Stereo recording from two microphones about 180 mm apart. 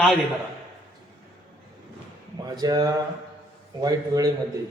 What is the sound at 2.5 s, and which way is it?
A man's voice, 20° right (ahead or behind).